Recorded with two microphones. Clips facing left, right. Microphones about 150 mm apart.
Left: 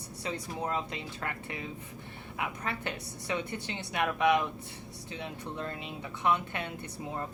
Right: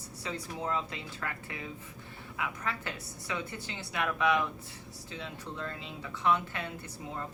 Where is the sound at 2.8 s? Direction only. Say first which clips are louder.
Left 3 dB; 20° left (ahead or behind).